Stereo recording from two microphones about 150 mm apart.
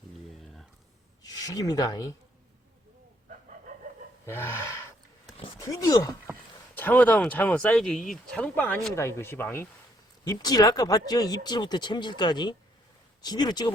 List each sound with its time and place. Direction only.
1.2 s speech: 25° left (ahead or behind)
4.3 s speech: 15° left (ahead or behind)
6.7 s speech: 10° left (ahead or behind); by 13.7 s 30° left (ahead or behind)